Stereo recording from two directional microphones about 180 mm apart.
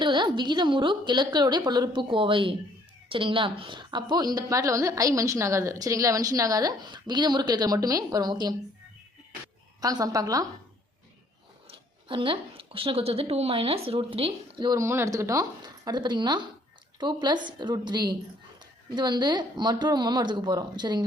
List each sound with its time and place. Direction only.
0.0 s a woman's voice: 25° right (ahead or behind)
9.8 s a woman's voice: 20° right (ahead or behind)
11.7 s a woman's voice: 30° right (ahead or behind)